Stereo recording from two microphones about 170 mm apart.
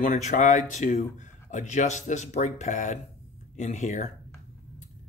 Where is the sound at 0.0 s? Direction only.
45° left (ahead or behind).